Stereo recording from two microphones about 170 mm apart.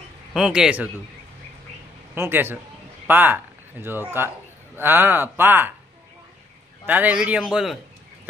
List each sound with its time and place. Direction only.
0.3 s a man's voice: centre (ahead or behind)
2.1 s speech: 15° right (ahead or behind)
6.9 s a man's voice: 10° right (ahead or behind)